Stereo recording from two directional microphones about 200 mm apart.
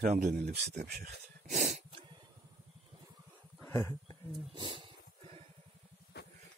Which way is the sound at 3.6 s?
10° left (ahead or behind).